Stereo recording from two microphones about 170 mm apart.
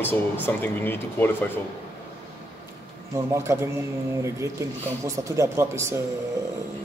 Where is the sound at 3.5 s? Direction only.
15° right (ahead or behind).